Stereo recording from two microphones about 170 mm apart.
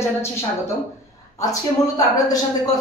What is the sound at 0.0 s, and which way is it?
Speech, 15° left (ahead or behind).